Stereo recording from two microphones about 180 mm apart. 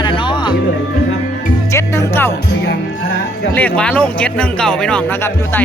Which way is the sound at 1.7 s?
15° left (ahead or behind).